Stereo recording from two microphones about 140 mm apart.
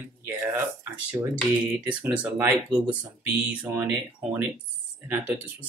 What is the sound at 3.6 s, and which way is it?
Speech, 10° right (ahead or behind).